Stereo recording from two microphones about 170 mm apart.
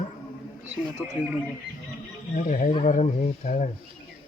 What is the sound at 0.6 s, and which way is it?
Speech, 10° right (ahead or behind).